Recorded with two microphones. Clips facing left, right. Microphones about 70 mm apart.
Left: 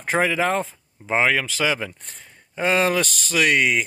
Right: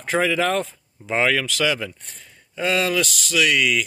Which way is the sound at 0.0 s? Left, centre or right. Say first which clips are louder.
Even; left.